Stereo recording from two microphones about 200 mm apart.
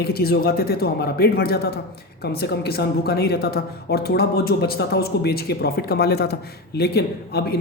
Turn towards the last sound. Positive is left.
turn(degrees=50)  # may be behind; listen again after turning